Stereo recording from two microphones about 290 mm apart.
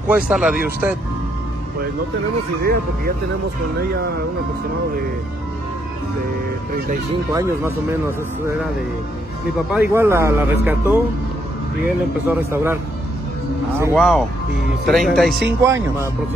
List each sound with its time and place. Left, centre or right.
0.1 s speech: centre
2.6 s speech: right
7.3 s a man's voice: centre
9.7 s a man's voice: centre
12.3 s a man's voice: centre
13.7 s a man's voice: centre